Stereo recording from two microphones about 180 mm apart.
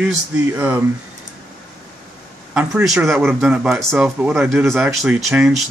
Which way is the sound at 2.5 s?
5° right (ahead or behind).